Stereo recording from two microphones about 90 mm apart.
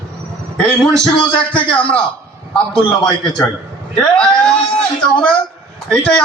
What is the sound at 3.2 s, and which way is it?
A man's voice, 10° left (ahead or behind).